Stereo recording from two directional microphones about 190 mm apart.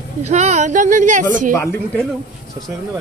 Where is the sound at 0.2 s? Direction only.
35° right (ahead or behind).